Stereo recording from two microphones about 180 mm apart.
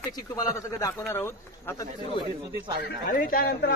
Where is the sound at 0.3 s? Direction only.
20° left (ahead or behind).